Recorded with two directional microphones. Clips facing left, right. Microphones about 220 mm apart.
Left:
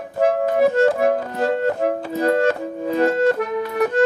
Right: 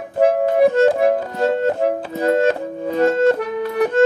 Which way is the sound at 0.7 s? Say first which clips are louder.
Right 2 dB; 20° right (ahead or behind).